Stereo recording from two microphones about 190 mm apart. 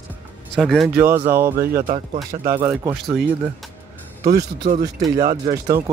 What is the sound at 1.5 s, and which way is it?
Speech, 55° right (ahead or behind).